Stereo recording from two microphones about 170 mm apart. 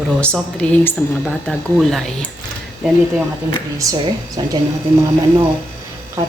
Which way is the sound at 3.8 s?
20° right (ahead or behind).